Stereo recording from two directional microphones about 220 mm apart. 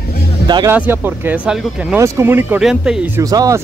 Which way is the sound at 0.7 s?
10° right (ahead or behind).